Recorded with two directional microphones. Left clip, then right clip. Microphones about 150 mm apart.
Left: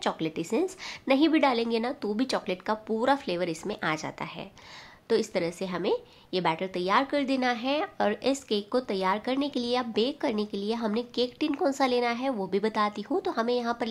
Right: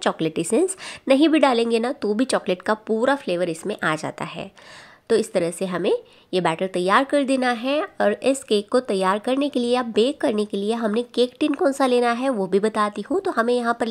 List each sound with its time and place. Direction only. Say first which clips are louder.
0.0 s a woman's voice: right 7 dB; 45° right (ahead or behind)